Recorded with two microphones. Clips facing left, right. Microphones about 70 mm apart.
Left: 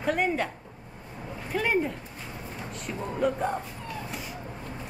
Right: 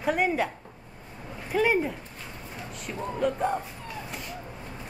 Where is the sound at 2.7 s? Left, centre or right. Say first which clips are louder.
Right 1 dB; centre.